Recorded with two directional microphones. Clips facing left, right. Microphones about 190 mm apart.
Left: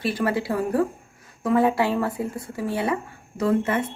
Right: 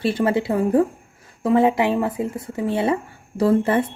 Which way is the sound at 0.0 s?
25° right (ahead or behind).